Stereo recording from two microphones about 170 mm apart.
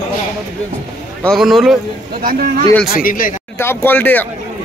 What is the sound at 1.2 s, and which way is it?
Speech, centre (ahead or behind).